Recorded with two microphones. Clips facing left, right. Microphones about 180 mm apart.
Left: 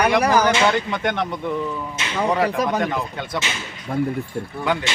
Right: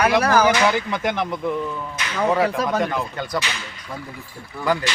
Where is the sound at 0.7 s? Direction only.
Centre (ahead or behind).